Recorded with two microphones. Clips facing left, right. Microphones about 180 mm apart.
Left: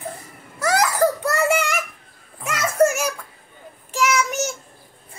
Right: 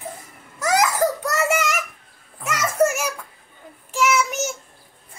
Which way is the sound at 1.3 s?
5° right (ahead or behind).